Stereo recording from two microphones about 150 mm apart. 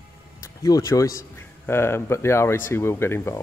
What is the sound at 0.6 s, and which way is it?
Speech, 20° left (ahead or behind).